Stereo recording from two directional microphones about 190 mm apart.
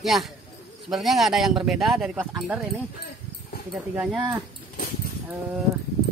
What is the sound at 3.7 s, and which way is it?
Speech, 5° right (ahead or behind).